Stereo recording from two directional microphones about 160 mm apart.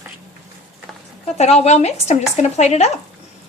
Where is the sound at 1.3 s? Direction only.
45° left (ahead or behind).